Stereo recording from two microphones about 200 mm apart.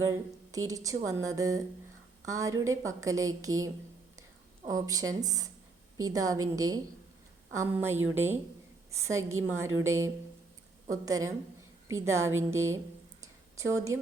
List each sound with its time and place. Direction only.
0.0 s speech: 15° right (ahead or behind)
4.7 s a woman's voice: 15° right (ahead or behind)
13.2 s a sound: 15° right (ahead or behind)